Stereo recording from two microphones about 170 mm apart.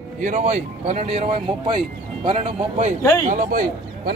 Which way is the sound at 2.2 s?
40° right (ahead or behind).